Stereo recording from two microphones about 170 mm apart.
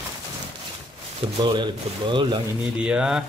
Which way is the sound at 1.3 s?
30° right (ahead or behind).